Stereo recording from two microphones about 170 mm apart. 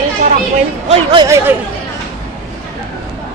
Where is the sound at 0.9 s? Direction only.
35° right (ahead or behind).